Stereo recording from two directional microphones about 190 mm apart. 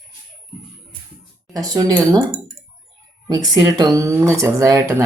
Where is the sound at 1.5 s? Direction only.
20° right (ahead or behind).